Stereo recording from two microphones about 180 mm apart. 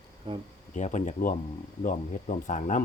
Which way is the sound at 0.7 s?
45° left (ahead or behind).